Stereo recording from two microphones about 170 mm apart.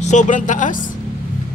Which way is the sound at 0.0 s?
45° left (ahead or behind).